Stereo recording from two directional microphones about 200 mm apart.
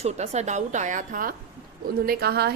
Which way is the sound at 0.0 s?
35° right (ahead or behind).